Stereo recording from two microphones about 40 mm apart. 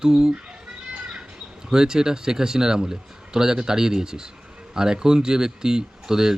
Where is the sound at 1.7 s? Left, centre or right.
Centre.